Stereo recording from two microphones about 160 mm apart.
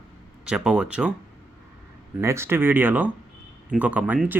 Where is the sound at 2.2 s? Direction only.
15° right (ahead or behind).